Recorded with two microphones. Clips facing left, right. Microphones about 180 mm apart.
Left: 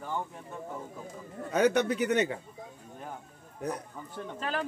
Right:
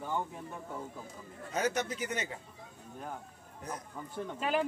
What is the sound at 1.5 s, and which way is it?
Speech, 65° left (ahead or behind).